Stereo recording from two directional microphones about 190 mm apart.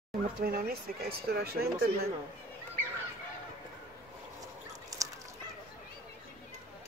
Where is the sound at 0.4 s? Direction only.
50° right (ahead or behind).